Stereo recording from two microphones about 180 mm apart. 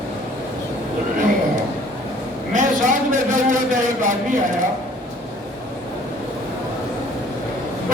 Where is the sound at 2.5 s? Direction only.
45° right (ahead or behind).